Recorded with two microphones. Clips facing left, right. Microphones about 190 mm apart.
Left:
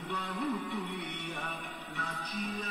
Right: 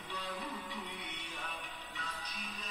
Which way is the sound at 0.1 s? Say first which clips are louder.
Left 8 dB; 55° left (ahead or behind).